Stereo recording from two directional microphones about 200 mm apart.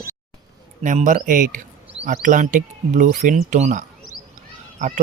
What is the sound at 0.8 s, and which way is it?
Speech, 35° right (ahead or behind).